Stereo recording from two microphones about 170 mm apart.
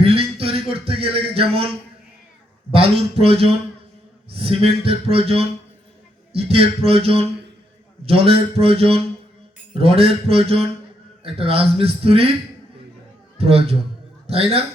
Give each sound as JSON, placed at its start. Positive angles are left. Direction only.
{"t": 0.0, "sound": "a sound", "side_deg": -35}
{"t": 2.7, "sound": "speech", "side_deg": -35}
{"t": 13.4, "sound": "speech", "side_deg": -35}